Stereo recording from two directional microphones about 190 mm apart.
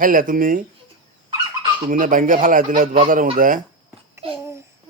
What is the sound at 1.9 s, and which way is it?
A man's voice, 45° right (ahead or behind).